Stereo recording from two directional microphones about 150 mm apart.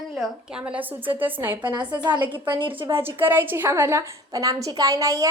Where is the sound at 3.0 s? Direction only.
15° right (ahead or behind).